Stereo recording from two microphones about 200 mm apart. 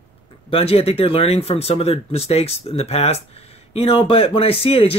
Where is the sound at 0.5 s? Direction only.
30° left (ahead or behind).